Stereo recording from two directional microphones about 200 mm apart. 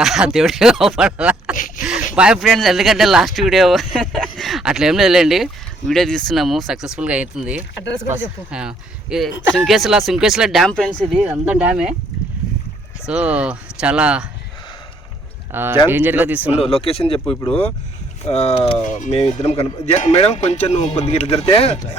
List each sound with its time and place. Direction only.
0.0 s speech: centre (ahead or behind)
1.5 s a sound: 40° left (ahead or behind)
1.8 s a sound: 5° right (ahead or behind)
2.1 s speech: 5° right (ahead or behind)
13.1 s speech: 5° right (ahead or behind)
15.5 s speech: 10° right (ahead or behind)
16.6 s speech: 30° left (ahead or behind)
18.3 s speech: 30° left (ahead or behind)